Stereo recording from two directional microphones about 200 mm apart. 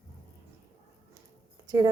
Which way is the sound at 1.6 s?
20° right (ahead or behind).